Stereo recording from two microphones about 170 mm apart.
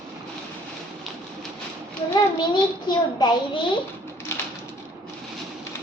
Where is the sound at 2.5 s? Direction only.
25° left (ahead or behind).